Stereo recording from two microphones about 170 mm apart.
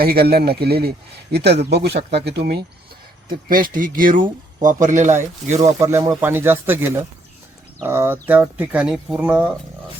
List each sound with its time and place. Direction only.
0.0 s speech: 65° right (ahead or behind)
3.2 s speech: 55° right (ahead or behind)
5.8 s speech: 15° right (ahead or behind)